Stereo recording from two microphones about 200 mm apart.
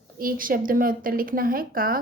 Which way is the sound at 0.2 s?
45° right (ahead or behind).